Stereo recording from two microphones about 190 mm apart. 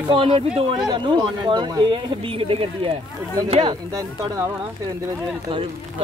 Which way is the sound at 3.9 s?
20° right (ahead or behind).